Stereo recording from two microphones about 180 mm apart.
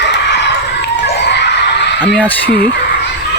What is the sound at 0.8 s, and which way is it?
Children shouting, 75° left (ahead or behind).